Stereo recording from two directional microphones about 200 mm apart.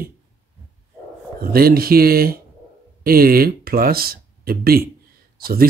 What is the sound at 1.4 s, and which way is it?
Speech, 50° right (ahead or behind).